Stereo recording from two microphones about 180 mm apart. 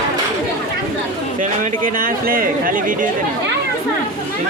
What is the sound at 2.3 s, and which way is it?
Chatter, 50° right (ahead or behind).